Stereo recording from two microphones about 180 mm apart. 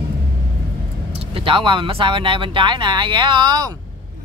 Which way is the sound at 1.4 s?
30° right (ahead or behind).